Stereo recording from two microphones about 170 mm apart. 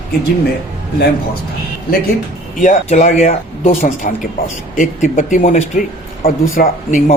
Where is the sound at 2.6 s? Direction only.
50° left (ahead or behind).